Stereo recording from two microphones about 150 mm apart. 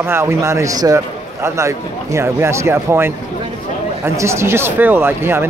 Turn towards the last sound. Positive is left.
turn(degrees=-15)  # may be behind; listen again after turning